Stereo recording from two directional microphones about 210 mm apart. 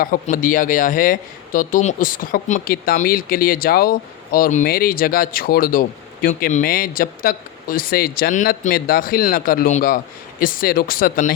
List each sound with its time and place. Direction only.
0.0 s speech: 40° left (ahead or behind)